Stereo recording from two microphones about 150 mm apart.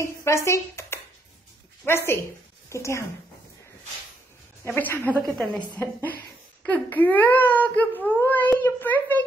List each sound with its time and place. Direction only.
0.0 s speech: 20° left (ahead or behind)
4.6 s a woman's voice: 15° left (ahead or behind)